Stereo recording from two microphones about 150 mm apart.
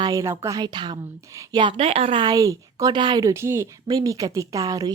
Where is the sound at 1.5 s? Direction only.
35° right (ahead or behind).